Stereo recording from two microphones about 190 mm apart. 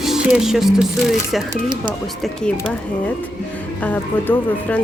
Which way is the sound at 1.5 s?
25° right (ahead or behind).